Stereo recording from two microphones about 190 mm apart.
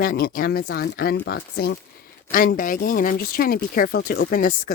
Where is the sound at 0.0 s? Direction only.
50° left (ahead or behind).